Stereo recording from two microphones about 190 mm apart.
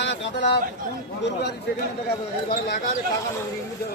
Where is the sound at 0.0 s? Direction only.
70° left (ahead or behind).